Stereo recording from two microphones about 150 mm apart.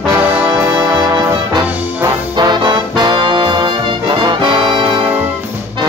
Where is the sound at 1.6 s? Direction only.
10° right (ahead or behind).